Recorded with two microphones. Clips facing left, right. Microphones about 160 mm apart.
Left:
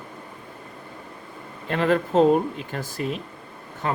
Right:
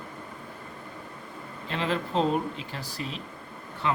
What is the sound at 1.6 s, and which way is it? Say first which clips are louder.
Speech: left 8 dB; 55° left (ahead or behind).